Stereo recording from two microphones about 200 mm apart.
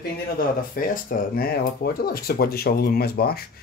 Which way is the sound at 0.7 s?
45° left (ahead or behind).